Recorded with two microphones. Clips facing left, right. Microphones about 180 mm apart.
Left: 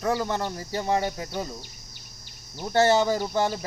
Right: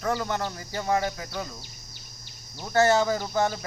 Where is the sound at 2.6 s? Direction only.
25° left (ahead or behind).